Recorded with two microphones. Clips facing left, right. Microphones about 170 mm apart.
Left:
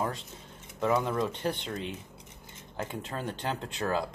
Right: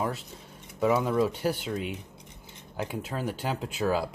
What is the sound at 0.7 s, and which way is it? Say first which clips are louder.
Speech: right 3 dB; 5° right (ahead or behind).